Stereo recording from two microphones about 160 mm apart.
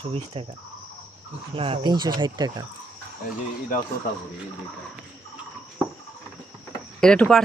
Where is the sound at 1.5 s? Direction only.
35° right (ahead or behind).